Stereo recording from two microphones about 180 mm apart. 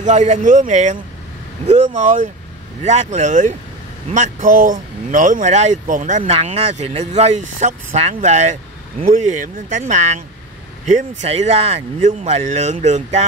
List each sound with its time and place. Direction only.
0.0 s speech: 40° right (ahead or behind)